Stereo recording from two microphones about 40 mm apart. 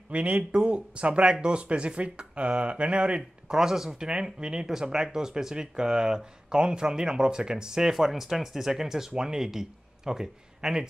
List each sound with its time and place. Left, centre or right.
0.1 s speech: right
3.2 s speech: centre